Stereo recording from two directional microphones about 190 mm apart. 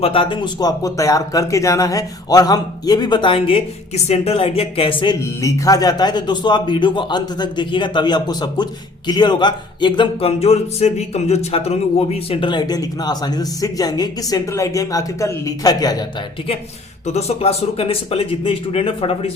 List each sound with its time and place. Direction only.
0.0 s speech: 30° left (ahead or behind)
5.2 s speech: 15° left (ahead or behind)
17.1 s speech: 35° left (ahead or behind)